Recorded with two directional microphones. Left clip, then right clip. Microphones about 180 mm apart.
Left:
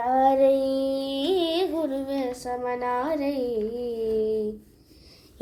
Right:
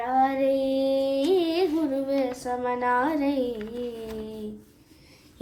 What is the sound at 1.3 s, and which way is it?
Carnatic music, 30° left (ahead or behind).